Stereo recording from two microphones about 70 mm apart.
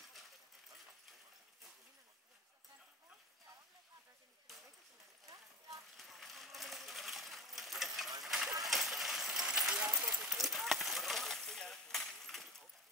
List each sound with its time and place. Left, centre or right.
5.2 s clip-clop: right
5.9 s sewing machine: centre
8.2 s clip-clop: centre
8.6 s coin: centre
9.8 s a sound: right
10.3 s a sound: centre